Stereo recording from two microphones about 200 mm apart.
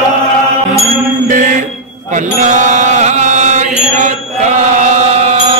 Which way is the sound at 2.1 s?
40° right (ahead or behind).